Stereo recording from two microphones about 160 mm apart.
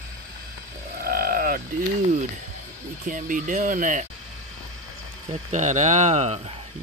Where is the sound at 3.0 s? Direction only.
55° right (ahead or behind).